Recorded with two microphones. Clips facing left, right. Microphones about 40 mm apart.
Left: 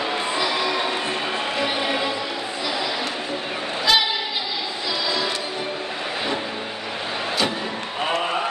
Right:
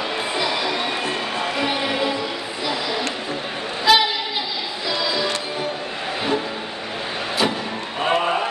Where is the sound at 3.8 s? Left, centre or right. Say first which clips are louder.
Right 4 dB; centre.